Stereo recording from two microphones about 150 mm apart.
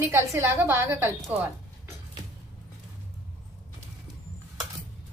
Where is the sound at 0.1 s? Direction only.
15° right (ahead or behind).